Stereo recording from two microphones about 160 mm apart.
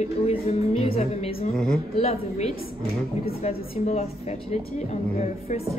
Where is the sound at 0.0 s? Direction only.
40° left (ahead or behind).